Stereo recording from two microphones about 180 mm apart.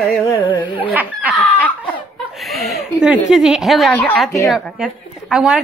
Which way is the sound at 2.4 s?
Centre (ahead or behind).